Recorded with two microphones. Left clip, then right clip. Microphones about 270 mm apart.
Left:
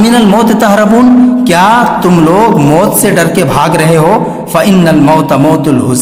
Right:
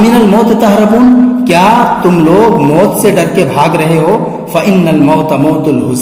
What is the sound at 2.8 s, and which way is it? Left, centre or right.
A man's voice, left.